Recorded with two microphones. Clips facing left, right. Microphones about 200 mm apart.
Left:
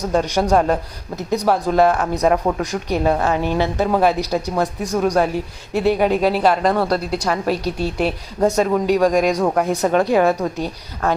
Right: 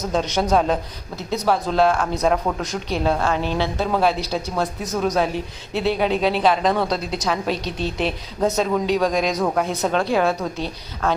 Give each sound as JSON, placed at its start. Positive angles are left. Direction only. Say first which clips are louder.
{"t": 0.0, "sound": "a woman's voice", "louder": "left 3 dB", "side_deg": 10}